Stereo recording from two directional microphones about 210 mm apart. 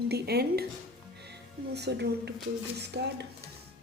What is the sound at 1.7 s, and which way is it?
A woman's voice, 50° right (ahead or behind).